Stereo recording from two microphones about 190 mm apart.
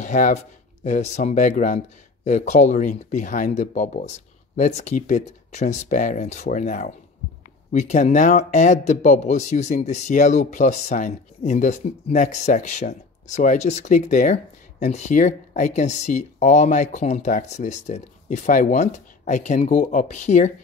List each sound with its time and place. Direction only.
0.0 s speech: 40° left (ahead or behind)